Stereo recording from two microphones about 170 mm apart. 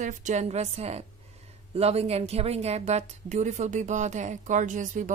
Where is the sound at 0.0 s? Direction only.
45° right (ahead or behind).